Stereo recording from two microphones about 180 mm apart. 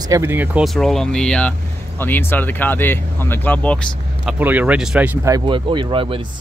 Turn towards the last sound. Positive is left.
turn(degrees=-30)  # may be behind; listen again after turning